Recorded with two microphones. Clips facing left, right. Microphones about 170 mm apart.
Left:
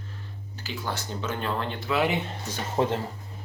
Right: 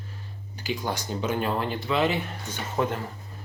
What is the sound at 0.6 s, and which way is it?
Speech, 15° right (ahead or behind).